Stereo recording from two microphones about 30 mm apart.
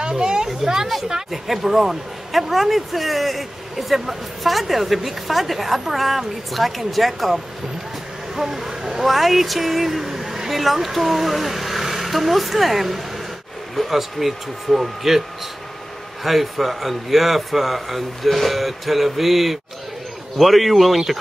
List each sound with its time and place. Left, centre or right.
0.2 s a sound: right
1.3 s speech: centre
8.4 s speech: centre
16.3 s speech: centre